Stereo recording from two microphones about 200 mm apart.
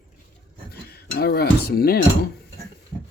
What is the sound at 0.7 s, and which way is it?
Speech, 50° left (ahead or behind).